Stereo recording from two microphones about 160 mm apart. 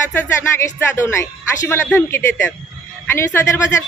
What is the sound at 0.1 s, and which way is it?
Speech, 15° left (ahead or behind).